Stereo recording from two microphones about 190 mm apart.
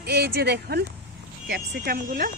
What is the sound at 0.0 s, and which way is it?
Speech, 55° right (ahead or behind).